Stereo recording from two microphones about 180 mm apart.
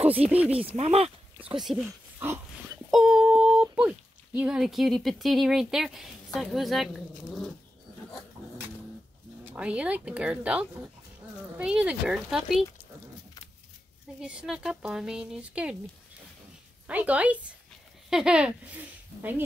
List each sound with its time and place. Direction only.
0.0 s speech: 35° right (ahead or behind)
0.3 s speech: 10° right (ahead or behind)
0.6 s speech: 35° right (ahead or behind)
1.6 s speech: centre (ahead or behind)
2.1 s dog: 15° right (ahead or behind)
2.9 s a sound: 5° right (ahead or behind)
3.6 s speech: 5° right (ahead or behind)
9.4 s speech: 10° right (ahead or behind)
14.2 s speech: 5° right (ahead or behind)
16.8 s speech: 10° right (ahead or behind)